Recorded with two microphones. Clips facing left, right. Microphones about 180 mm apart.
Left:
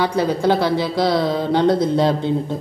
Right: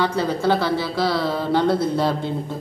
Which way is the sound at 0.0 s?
15° left (ahead or behind).